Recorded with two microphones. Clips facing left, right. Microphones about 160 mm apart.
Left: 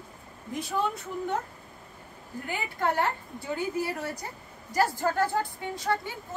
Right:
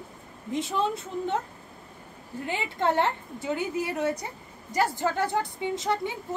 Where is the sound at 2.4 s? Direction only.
25° right (ahead or behind).